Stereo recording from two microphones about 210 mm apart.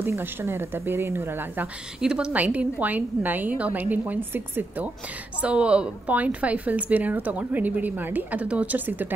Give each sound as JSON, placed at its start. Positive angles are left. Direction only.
{"t": 0.0, "sound": "speech", "side_deg": -10}